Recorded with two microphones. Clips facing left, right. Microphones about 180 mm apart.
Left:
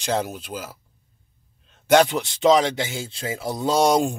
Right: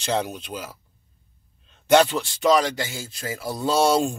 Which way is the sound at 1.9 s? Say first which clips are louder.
Left 1 dB; 15° left (ahead or behind).